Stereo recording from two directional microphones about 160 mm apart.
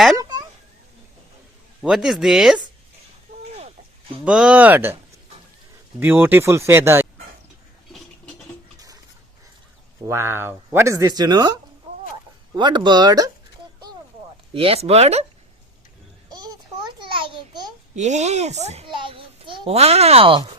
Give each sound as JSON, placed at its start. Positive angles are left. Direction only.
{"t": 0.2, "sound": "a sound", "side_deg": -25}
{"t": 1.8, "sound": "speech", "side_deg": -5}
{"t": 4.3, "sound": "speech", "side_deg": -5}
{"t": 6.0, "sound": "speech", "side_deg": -10}
{"t": 10.1, "sound": "speech", "side_deg": -15}
{"t": 12.5, "sound": "speech", "side_deg": -30}
{"t": 14.5, "sound": "speech", "side_deg": -35}
{"t": 16.3, "sound": "a sound", "side_deg": -25}
{"t": 17.0, "sound": "babbling", "side_deg": -30}
{"t": 17.9, "sound": "a child's voice", "side_deg": -45}
{"t": 18.9, "sound": "a child's voice", "side_deg": -30}